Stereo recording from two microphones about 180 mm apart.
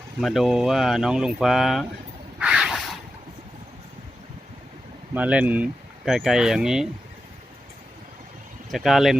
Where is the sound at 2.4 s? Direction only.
5° right (ahead or behind).